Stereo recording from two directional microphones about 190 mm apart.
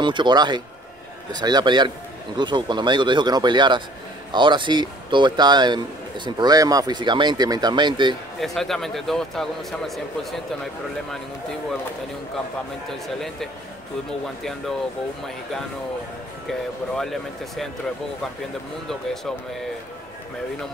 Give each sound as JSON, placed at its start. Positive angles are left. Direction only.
{"t": 0.0, "sound": "a man's voice", "side_deg": -25}
{"t": 8.4, "sound": "a man's voice", "side_deg": 0}
{"t": 16.4, "sound": "a man's voice", "side_deg": 0}